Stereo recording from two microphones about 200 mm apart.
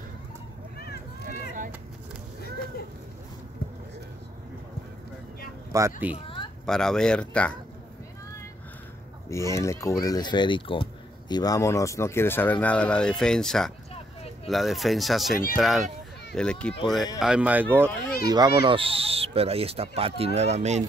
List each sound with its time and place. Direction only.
5.7 s speech: 15° right (ahead or behind)
6.1 s a sound: 25° left (ahead or behind)
6.6 s speech: 5° left (ahead or behind)
9.3 s speech: 15° left (ahead or behind); by 17.8 s 10° right (ahead or behind)
18.2 s speech: 20° right (ahead or behind)